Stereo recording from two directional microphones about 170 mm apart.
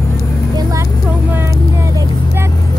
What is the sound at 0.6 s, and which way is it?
Speech, 20° right (ahead or behind).